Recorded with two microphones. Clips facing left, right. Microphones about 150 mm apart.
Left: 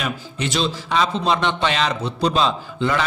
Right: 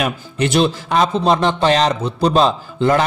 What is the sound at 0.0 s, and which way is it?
A man's voice, 55° right (ahead or behind).